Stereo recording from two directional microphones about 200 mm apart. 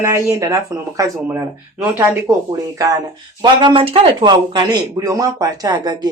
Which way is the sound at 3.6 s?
25° right (ahead or behind).